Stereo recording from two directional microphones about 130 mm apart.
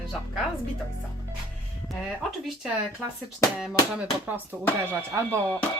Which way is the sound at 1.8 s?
Centre (ahead or behind).